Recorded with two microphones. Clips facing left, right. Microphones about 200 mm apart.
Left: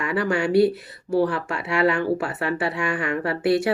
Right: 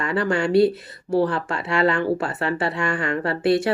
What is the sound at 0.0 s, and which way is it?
Speech, 10° left (ahead or behind).